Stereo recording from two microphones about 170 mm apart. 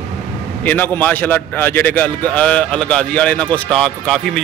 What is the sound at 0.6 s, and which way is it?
A man's voice, 10° left (ahead or behind).